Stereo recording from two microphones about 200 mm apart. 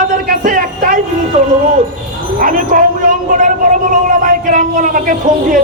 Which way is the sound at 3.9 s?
40° right (ahead or behind).